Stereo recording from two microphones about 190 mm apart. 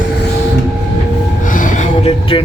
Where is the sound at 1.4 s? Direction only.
45° left (ahead or behind).